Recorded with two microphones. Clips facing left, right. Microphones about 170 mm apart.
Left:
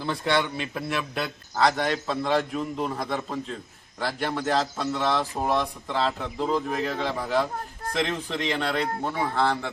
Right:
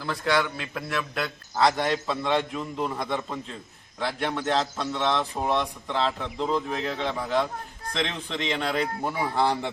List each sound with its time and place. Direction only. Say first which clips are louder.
0.0 s a man's voice: even; 25° left (ahead or behind)
1.5 s a man's voice: even; centre (ahead or behind); by 9.7 s 15° right (ahead or behind)